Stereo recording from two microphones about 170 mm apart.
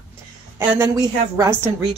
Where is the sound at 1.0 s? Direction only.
20° right (ahead or behind).